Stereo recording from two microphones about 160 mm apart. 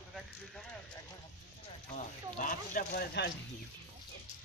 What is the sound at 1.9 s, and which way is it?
Speech, 55° left (ahead or behind).